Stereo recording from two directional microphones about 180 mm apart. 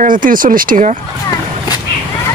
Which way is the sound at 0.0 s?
50° right (ahead or behind).